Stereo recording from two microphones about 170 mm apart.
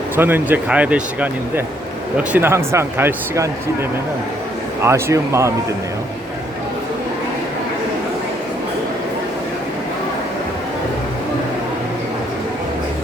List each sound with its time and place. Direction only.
0.2 s speech: 10° right (ahead or behind)
4.8 s speech: 15° right (ahead or behind)